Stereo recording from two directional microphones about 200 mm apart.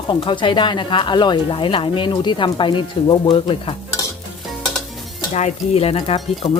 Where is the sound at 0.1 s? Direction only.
25° left (ahead or behind).